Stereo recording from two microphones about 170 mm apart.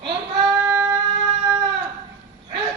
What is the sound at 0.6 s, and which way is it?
Music, 15° right (ahead or behind).